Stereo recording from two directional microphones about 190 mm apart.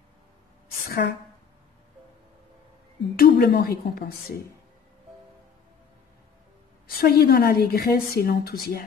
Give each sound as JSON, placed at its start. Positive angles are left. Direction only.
{"t": 0.7, "sound": "a sound", "side_deg": 55}
{"t": 3.2, "sound": "a woman's voice", "side_deg": 55}
{"t": 7.0, "sound": "a woman's voice", "side_deg": 55}